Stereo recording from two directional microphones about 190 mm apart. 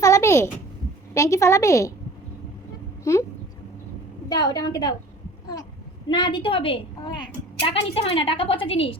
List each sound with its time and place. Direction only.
0.0 s a sound: 15° left (ahead or behind)
1.1 s a woman's voice: 15° left (ahead or behind)
3.0 s speech: 15° left (ahead or behind)
4.3 s a woman's voice: 20° left (ahead or behind)
6.1 s a woman's voice: 25° left (ahead or behind)